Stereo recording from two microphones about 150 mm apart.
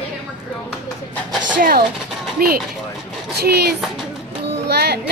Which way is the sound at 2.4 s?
90° right.